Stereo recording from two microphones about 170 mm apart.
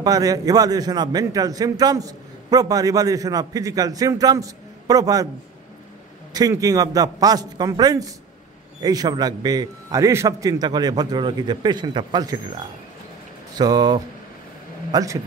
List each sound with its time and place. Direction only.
0.0 s a man's voice: 20° right (ahead or behind)
6.3 s a man's voice: 20° right (ahead or behind)